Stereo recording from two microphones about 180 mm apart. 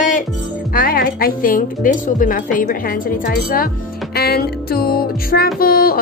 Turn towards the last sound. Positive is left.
turn(degrees=55)  # may be behind; listen again after turning